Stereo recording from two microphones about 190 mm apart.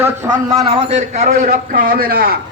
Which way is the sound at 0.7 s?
30° right (ahead or behind).